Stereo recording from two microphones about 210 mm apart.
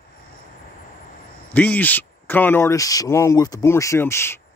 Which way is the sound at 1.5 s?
10° left (ahead or behind).